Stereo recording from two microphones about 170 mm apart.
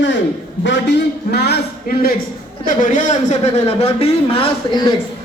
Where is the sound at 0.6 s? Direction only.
90° left; by 2.1 s 60° left (ahead or behind).